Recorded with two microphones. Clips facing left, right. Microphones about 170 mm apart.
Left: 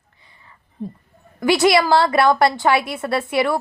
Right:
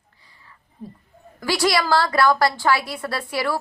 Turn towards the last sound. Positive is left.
turn(degrees=20)  # may be behind; listen again after turning